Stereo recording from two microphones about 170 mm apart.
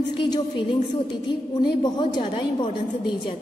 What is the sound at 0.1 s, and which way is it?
A woman's voice, 25° left (ahead or behind).